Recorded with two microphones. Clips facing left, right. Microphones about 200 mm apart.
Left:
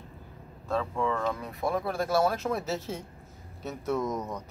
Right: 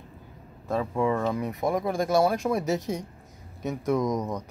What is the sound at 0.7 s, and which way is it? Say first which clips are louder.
Speech: right 4 dB; 15° right (ahead or behind).